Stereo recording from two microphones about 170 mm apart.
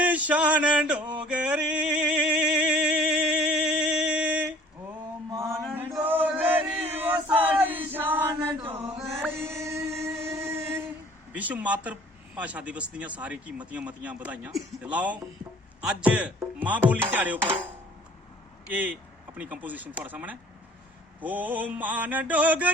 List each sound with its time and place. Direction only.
0.0 s male singing: 10° right (ahead or behind)
5.3 s mantra: 15° right (ahead or behind)
6.0 s male singing: 10° right (ahead or behind)
9.3 s music: 15° right (ahead or behind)
11.3 s speech: 10° right (ahead or behind)
18.7 s speech: 10° right (ahead or behind)